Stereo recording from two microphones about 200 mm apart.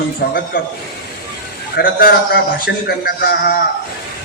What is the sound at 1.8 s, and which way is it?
A man's voice, 50° left (ahead or behind).